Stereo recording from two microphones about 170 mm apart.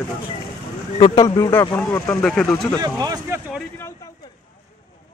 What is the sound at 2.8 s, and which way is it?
Speech, 20° right (ahead or behind).